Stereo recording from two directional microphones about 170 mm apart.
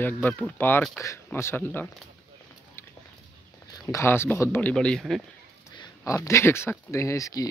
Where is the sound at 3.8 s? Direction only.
15° left (ahead or behind).